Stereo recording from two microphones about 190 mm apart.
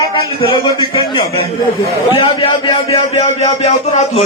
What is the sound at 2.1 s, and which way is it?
A man's voice, 30° left (ahead or behind).